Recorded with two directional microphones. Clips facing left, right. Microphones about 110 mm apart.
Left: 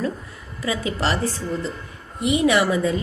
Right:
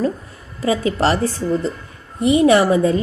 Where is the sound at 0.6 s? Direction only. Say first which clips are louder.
Right 7 dB; 40° right (ahead or behind).